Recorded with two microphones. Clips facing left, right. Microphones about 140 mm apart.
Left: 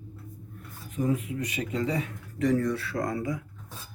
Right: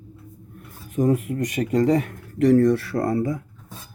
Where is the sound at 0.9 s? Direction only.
45° right (ahead or behind).